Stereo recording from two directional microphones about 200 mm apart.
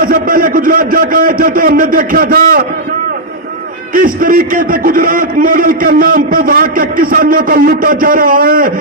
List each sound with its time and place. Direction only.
0.0 s a man's voice: 45° right (ahead or behind)
3.9 s a man's voice: 45° right (ahead or behind)